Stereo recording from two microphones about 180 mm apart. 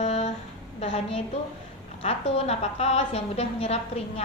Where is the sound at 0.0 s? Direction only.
40° left (ahead or behind).